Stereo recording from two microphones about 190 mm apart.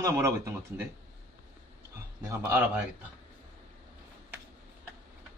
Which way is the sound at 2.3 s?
15° right (ahead or behind).